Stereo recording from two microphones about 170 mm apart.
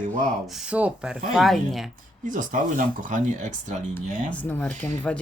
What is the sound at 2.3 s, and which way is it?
Speech, 50° right (ahead or behind).